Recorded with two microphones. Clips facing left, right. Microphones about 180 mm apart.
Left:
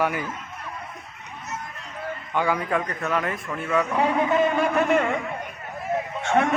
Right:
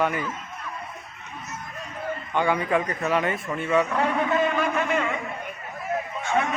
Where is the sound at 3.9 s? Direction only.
15° left (ahead or behind).